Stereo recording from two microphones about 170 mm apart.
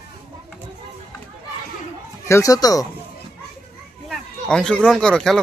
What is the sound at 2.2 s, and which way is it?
Speech, 20° left (ahead or behind).